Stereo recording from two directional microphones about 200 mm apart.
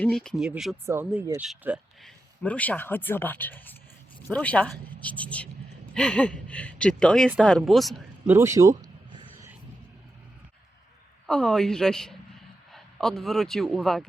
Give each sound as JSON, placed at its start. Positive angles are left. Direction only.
{"t": 0.0, "sound": "a woman's voice", "side_deg": 5}
{"t": 0.9, "sound": "a woman's voice", "side_deg": -15}
{"t": 8.3, "sound": "speech", "side_deg": -15}
{"t": 8.8, "sound": "a sound", "side_deg": -20}
{"t": 11.3, "sound": "a woman's voice", "side_deg": 5}